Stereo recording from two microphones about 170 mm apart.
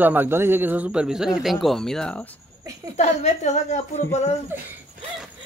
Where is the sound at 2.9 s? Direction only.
40° left (ahead or behind).